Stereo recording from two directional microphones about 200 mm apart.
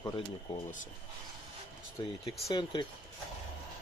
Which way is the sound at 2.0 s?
20° left (ahead or behind).